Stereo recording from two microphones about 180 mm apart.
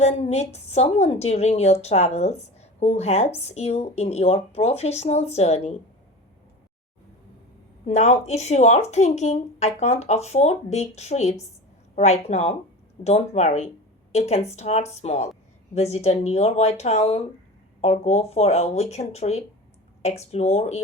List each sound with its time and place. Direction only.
0.0 s a woman's voice: 40° left (ahead or behind)
7.9 s a woman's voice: 40° left (ahead or behind)